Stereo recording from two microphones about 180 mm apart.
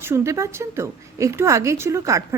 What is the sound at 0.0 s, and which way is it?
Speech, 15° right (ahead or behind).